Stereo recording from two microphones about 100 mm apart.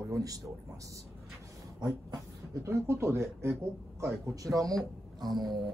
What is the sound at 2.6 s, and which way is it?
Speech, 30° right (ahead or behind).